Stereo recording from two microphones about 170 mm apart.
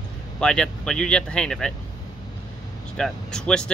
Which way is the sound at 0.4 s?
5° left (ahead or behind).